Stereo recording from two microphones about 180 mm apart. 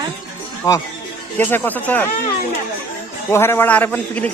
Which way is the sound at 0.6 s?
15° left (ahead or behind).